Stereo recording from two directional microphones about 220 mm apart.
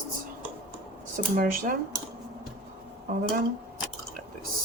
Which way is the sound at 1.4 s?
40° right (ahead or behind).